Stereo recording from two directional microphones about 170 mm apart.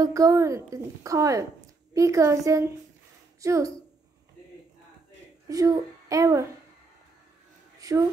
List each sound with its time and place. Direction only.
0.0 s a woman's voice: 20° right (ahead or behind)
5.5 s a child's voice: 20° right (ahead or behind)
7.8 s a woman's voice: 20° right (ahead or behind)